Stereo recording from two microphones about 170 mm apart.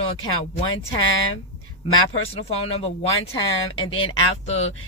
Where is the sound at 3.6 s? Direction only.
30° left (ahead or behind).